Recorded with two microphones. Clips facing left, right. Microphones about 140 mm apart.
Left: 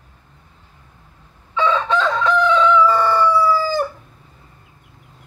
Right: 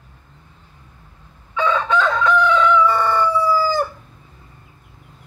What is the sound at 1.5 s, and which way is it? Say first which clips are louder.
Crowing: even; 30° left (ahead or behind).